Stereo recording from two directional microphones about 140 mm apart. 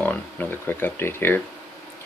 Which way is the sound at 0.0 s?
10° left (ahead or behind).